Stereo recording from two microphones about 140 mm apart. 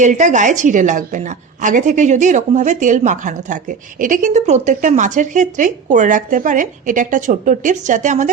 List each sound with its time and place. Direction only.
0.0 s a woman's voice: 60° right (ahead or behind)